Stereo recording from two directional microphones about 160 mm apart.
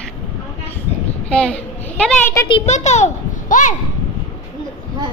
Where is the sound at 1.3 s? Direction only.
5° left (ahead or behind).